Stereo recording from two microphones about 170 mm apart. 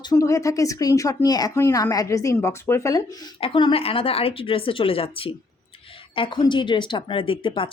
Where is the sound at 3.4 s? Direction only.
30° left (ahead or behind).